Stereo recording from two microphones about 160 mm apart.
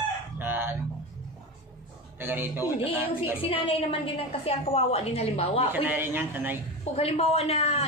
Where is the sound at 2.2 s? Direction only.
15° right (ahead or behind).